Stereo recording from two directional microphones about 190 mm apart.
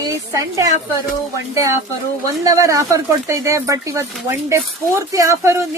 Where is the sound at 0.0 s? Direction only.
20° right (ahead or behind).